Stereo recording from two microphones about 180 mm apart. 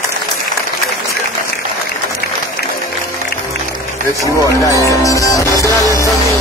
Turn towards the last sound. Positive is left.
turn(degrees=20)  # may be behind; listen again after turning